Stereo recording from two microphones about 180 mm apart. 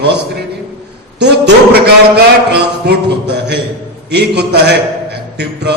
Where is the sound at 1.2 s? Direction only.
65° right (ahead or behind).